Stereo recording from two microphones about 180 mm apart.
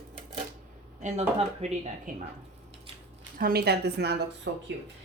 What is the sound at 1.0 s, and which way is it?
A woman's voice, 35° right (ahead or behind).